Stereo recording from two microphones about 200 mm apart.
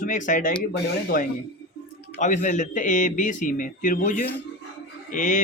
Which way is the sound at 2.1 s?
40° left (ahead or behind).